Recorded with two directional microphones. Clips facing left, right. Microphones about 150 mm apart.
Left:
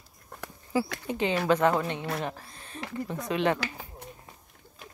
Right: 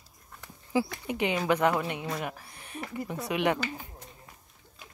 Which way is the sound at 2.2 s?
15° right (ahead or behind).